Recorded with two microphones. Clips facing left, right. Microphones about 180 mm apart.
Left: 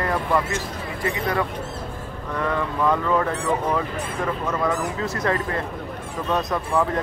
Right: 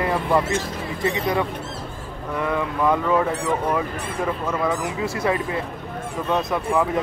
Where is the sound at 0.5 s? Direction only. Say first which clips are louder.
Right 3 dB; 25° right (ahead or behind).